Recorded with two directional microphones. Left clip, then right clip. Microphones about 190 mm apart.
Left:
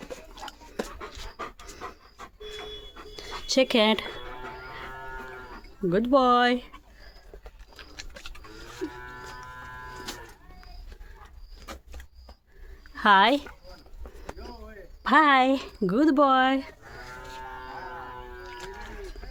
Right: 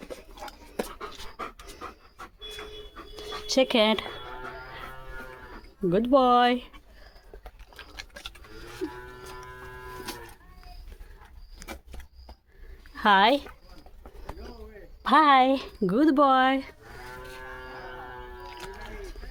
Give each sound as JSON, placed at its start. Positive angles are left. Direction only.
{"t": 0.1, "sound": "a sound", "side_deg": 5}
{"t": 0.8, "sound": "pant", "side_deg": -10}
{"t": 3.2, "sound": "a sound", "side_deg": 0}
{"t": 5.9, "sound": "speech", "side_deg": 0}
{"t": 7.8, "sound": "bird", "side_deg": -10}
{"t": 12.9, "sound": "speech", "side_deg": 0}
{"t": 15.0, "sound": "speech", "side_deg": 0}
{"t": 18.4, "sound": "livestock", "side_deg": -20}